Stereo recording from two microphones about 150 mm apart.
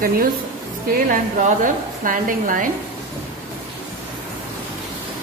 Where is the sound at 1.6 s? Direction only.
65° right (ahead or behind).